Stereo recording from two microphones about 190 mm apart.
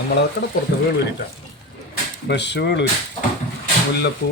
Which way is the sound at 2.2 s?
65° left (ahead or behind).